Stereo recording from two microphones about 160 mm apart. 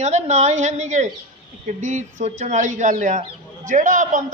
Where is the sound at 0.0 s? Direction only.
45° right (ahead or behind).